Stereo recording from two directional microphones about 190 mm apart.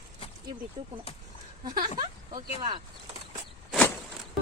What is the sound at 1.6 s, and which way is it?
Speech, 20° right (ahead or behind).